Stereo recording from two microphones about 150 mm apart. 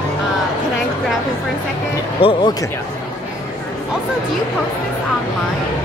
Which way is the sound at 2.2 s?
35° left (ahead or behind).